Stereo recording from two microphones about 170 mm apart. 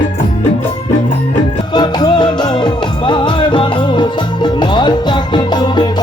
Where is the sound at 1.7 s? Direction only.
25° left (ahead or behind).